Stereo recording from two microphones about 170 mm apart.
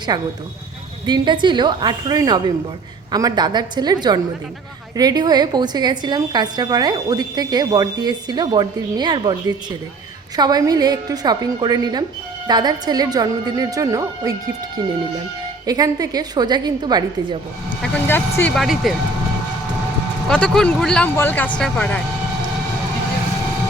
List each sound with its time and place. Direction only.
0.1 s a woman's voice: 20° right (ahead or behind)
15.6 s a woman's voice: 20° right (ahead or behind)
17.8 s speech: 10° left (ahead or behind)
18.5 s speech: centre (ahead or behind)
20.2 s speech: 5° left (ahead or behind)